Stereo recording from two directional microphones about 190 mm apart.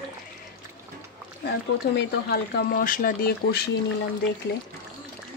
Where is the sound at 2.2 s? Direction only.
55° left (ahead or behind).